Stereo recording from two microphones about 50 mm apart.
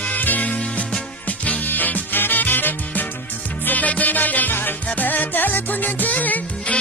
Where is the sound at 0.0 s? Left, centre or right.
Left.